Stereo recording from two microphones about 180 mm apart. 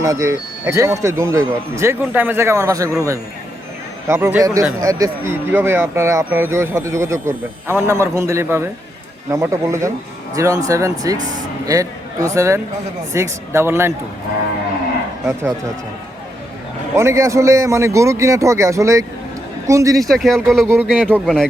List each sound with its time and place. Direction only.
0.0 s a man's voice: 15° right (ahead or behind)
15.3 s speech: 15° right (ahead or behind)
16.9 s speech: 15° right (ahead or behind)
20.0 s speech: centre (ahead or behind)